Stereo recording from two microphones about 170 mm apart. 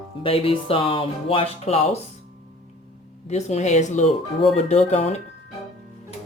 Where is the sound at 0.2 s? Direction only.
30° left (ahead or behind).